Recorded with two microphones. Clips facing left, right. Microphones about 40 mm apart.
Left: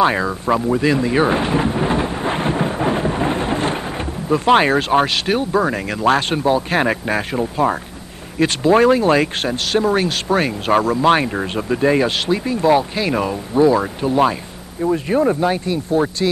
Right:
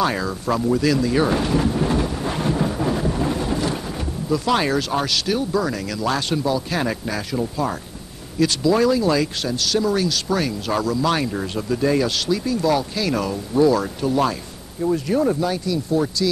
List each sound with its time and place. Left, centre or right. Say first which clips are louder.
0.0 s speech: left 5 dB; left